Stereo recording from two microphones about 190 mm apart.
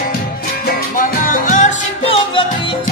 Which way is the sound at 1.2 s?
45° left (ahead or behind).